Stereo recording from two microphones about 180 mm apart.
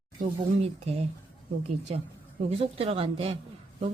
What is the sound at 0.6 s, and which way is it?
Speech, 35° right (ahead or behind).